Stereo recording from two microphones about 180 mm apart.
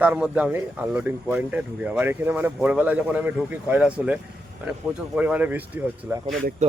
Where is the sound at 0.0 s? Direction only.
5° right (ahead or behind).